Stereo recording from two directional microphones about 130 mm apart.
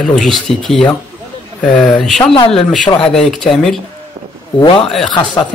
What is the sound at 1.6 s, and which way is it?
Speech, 5° left (ahead or behind).